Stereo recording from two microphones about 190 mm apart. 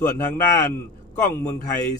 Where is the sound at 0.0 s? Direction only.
10° left (ahead or behind).